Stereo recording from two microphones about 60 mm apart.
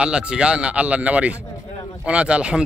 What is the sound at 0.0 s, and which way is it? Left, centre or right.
A man's voice, centre.